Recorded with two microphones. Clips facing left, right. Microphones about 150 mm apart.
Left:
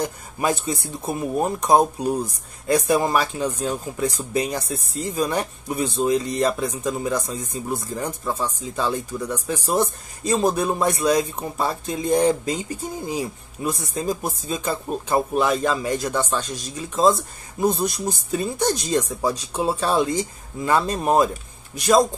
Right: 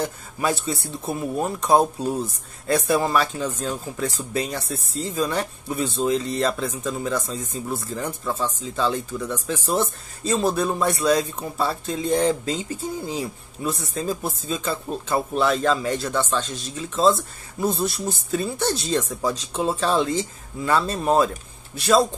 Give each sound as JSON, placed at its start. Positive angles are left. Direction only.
{"t": 0.0, "sound": "speech", "side_deg": 15}